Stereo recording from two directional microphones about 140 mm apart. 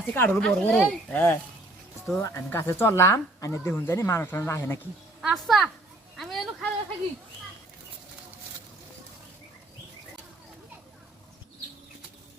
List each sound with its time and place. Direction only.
0.1 s speech: 10° left (ahead or behind)
5.2 s a woman's voice: centre (ahead or behind)
6.1 s a sound: centre (ahead or behind)